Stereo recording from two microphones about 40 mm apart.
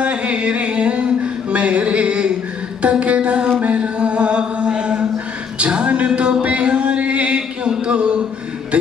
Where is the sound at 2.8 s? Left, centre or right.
Right.